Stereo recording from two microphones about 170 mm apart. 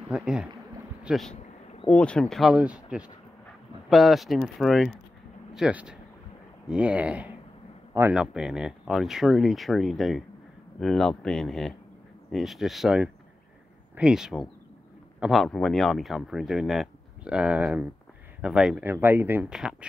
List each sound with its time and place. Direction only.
0.1 s speech: 5° right (ahead or behind)
1.3 s a sound: 40° left (ahead or behind)
1.9 s speech: 5° left (ahead or behind)